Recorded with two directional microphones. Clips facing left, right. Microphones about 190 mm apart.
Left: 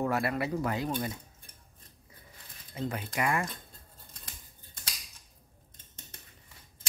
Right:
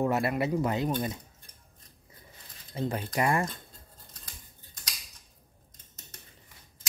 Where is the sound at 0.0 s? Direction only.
20° right (ahead or behind).